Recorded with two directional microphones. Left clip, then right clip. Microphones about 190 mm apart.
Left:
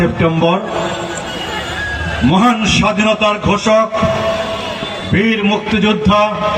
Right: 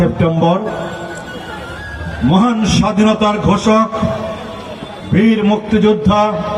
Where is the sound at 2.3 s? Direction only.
65° right (ahead or behind).